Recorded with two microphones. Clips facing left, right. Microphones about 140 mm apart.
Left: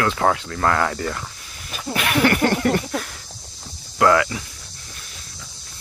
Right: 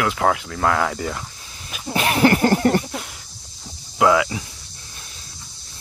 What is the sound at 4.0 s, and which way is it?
Speech, 10° right (ahead or behind).